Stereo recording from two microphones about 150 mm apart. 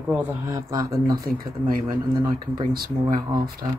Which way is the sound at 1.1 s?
80° right.